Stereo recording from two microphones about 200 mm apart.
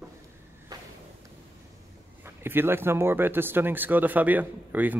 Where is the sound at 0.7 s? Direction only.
20° right (ahead or behind).